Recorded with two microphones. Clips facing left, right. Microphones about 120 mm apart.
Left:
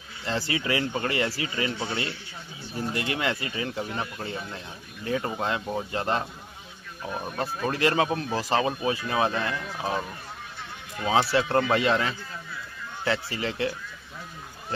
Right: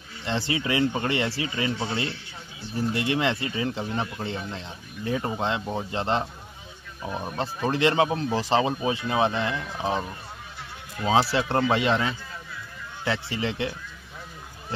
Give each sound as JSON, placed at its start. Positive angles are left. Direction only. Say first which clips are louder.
{"t": 0.2, "sound": "speech", "louder": "right 1 dB", "side_deg": -25}
{"t": 7.1, "sound": "speech", "louder": "right 1 dB", "side_deg": 0}
{"t": 7.3, "sound": "speech", "louder": "right 2 dB", "side_deg": -25}
{"t": 11.3, "sound": "speech", "louder": "even", "side_deg": -25}